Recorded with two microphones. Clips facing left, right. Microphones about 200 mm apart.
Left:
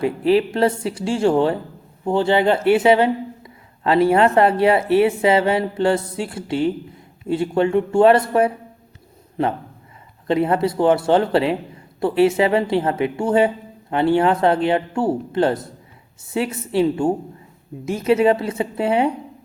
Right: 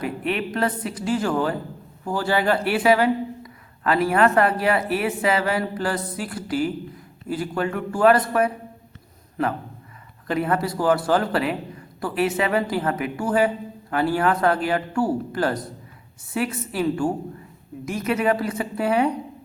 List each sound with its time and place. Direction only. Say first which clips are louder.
0.0 s speech: left 9 dB; 30° left (ahead or behind)